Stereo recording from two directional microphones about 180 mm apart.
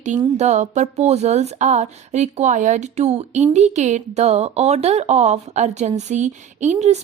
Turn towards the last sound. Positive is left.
turn(degrees=-40)  # may be behind; listen again after turning